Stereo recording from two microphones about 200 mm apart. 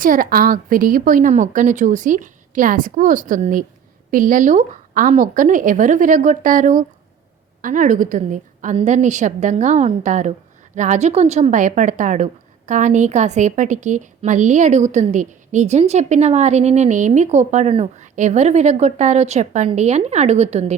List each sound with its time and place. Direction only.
0.0 s a woman's voice: 45° right (ahead or behind)